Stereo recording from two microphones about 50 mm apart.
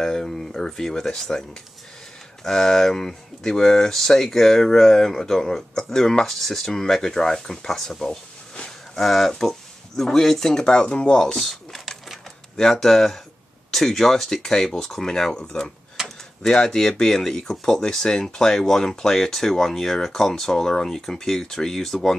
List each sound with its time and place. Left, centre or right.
0.0 s speech: centre
2.4 s speech: centre
11.2 s a sound: centre
12.5 s speech: centre
12.8 s speech: centre
16.0 s tick-tock: centre
16.4 s speech: centre